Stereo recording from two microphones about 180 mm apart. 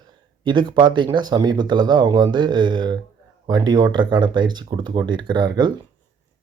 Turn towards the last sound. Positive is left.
turn(degrees=-25)  # may be behind; listen again after turning